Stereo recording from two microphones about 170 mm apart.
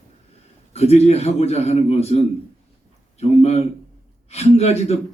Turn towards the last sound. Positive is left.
turn(degrees=40)  # may be behind; listen again after turning